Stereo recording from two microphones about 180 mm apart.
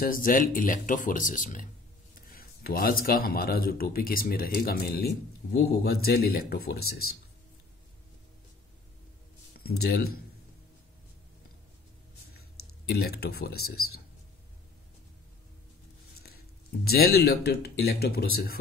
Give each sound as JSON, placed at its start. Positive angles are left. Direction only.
{"t": 0.0, "sound": "speech", "side_deg": 50}
{"t": 9.6, "sound": "speech", "side_deg": 55}
{"t": 12.9, "sound": "speech", "side_deg": 60}
{"t": 16.2, "sound": "speech", "side_deg": 60}